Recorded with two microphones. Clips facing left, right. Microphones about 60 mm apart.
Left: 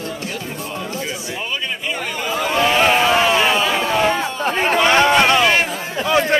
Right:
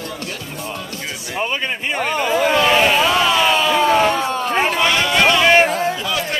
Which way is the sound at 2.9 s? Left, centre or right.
Left.